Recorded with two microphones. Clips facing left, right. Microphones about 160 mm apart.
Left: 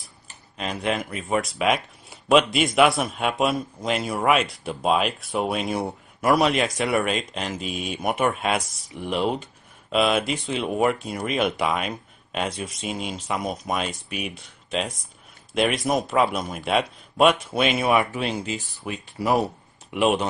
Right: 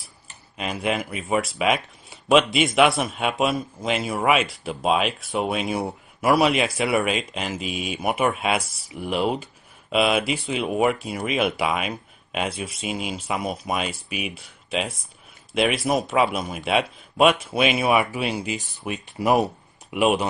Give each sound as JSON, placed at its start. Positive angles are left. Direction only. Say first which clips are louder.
{"t": 0.6, "sound": "a man's voice", "louder": "right 1 dB", "side_deg": -5}